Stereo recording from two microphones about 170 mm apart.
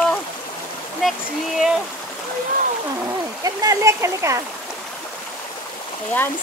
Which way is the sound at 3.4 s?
20° right (ahead or behind).